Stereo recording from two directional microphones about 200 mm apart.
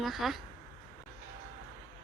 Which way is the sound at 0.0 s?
Centre (ahead or behind).